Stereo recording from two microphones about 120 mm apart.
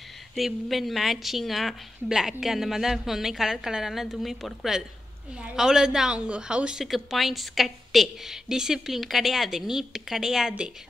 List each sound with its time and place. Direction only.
0.4 s a woman's voice: centre (ahead or behind)